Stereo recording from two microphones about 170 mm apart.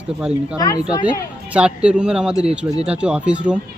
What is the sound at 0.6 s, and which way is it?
Speech, 20° left (ahead or behind).